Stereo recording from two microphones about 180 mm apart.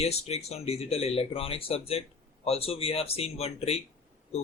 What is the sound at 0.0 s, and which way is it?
Speech, 35° left (ahead or behind).